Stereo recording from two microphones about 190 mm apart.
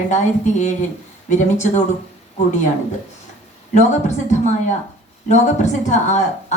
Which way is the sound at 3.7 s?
40° left (ahead or behind).